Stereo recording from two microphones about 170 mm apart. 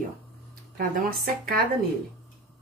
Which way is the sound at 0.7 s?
65° right (ahead or behind).